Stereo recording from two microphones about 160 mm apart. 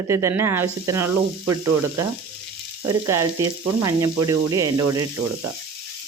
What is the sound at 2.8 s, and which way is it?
Speech, 20° right (ahead or behind).